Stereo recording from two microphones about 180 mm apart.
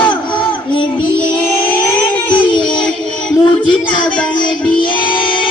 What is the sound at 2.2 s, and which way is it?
Child singing, 25° left (ahead or behind).